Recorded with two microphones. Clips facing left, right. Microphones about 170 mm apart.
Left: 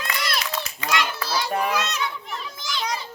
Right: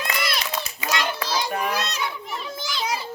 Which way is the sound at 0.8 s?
10° right (ahead or behind).